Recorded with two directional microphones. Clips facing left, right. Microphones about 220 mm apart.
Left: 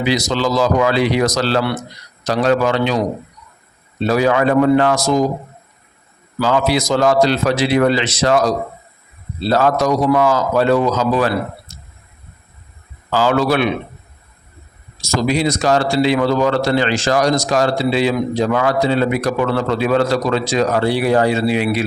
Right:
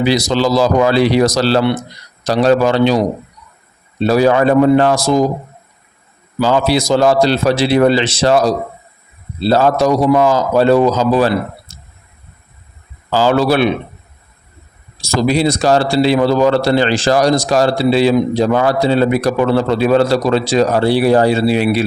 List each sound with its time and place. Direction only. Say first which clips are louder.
0.0 s a man's voice: right 4 dB; 35° right (ahead or behind)
4.0 s a man's voice: right 3 dB; 35° right (ahead or behind)
6.4 s a man's voice: right 3 dB; 30° right (ahead or behind)
11.7 s a sound: left 1 dB; 30° right (ahead or behind)
13.1 s a man's voice: right 3 dB; 30° right (ahead or behind)
15.0 s a man's voice: right 3 dB; 30° right (ahead or behind)